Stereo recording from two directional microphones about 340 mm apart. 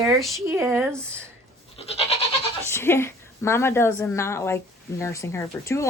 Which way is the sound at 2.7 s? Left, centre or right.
Centre.